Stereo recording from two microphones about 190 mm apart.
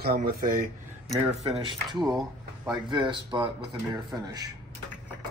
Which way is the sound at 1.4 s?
30° right (ahead or behind).